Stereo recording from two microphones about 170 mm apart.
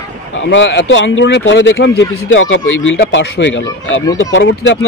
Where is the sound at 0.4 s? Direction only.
90° left.